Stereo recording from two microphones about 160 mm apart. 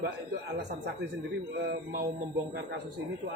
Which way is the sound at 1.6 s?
75° right (ahead or behind).